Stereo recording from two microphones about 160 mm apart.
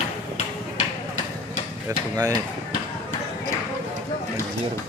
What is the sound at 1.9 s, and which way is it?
Speech, 20° right (ahead or behind).